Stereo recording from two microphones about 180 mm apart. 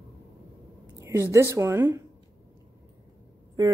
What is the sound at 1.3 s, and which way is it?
Speech, 15° right (ahead or behind).